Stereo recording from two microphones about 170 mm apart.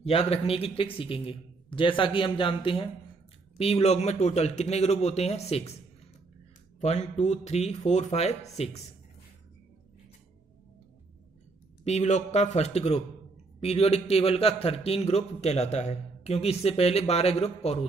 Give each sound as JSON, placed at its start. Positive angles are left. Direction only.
{"t": 0.0, "sound": "a man's voice", "side_deg": 35}
{"t": 6.8, "sound": "a man's voice", "side_deg": 40}
{"t": 11.8, "sound": "a man's voice", "side_deg": 40}